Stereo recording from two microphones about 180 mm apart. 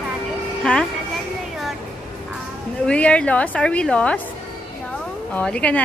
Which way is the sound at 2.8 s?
5° left (ahead or behind).